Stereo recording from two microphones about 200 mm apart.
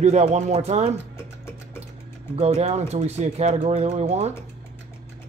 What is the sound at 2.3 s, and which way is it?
Speech, 30° right (ahead or behind).